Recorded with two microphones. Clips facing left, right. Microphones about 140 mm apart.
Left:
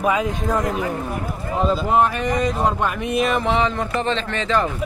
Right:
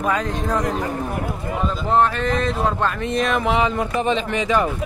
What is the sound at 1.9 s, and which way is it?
Speech, 10° left (ahead or behind).